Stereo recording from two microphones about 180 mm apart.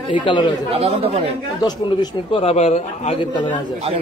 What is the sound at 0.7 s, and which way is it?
Speech, 35° right (ahead or behind).